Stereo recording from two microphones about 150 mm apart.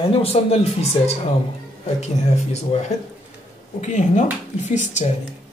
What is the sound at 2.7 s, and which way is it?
Speech, 40° left (ahead or behind).